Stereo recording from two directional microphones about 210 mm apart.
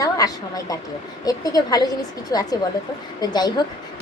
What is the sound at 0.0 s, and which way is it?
A woman's voice, 15° left (ahead or behind).